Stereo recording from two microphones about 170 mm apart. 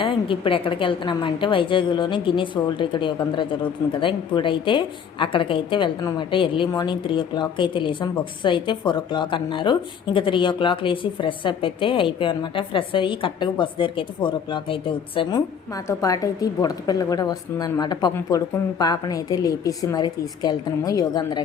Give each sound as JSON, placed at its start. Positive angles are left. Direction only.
{"t": 0.0, "sound": "speech", "side_deg": 30}